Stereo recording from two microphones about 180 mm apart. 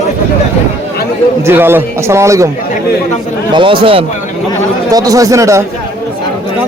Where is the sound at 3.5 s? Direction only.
30° right (ahead or behind).